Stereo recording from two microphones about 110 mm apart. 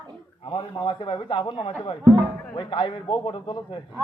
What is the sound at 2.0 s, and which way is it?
Speech, 30° right (ahead or behind).